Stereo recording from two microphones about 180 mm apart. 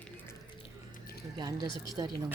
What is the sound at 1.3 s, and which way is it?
Speech, 25° right (ahead or behind).